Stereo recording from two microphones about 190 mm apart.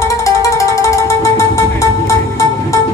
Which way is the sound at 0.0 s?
15° left (ahead or behind).